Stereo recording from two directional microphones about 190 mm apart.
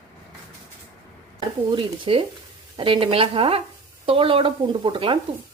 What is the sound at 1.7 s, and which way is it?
Speech, 30° right (ahead or behind).